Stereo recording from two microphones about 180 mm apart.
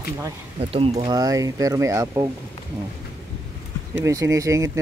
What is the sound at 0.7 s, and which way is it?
Speech, 30° right (ahead or behind).